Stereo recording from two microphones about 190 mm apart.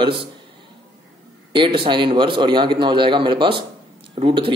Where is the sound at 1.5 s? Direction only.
25° right (ahead or behind).